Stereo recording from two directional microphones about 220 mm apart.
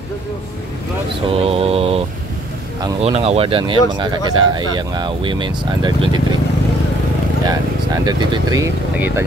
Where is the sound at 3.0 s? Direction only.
30° right (ahead or behind).